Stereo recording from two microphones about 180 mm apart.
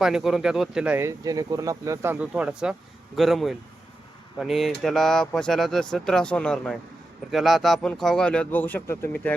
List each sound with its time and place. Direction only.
0.0 s speech: centre (ahead or behind)